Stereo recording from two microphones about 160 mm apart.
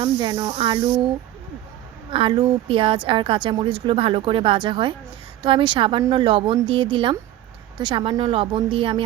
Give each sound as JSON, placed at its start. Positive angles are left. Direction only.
{"t": 0.0, "sound": "speech", "side_deg": -30}
{"t": 2.0, "sound": "a woman's voice", "side_deg": -35}